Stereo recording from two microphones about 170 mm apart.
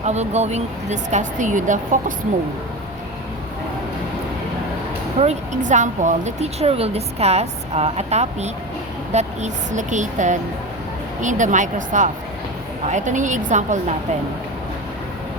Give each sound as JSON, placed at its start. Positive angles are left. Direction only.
{"t": 0.0, "sound": "speech", "side_deg": -40}
{"t": 5.2, "sound": "speech", "side_deg": -45}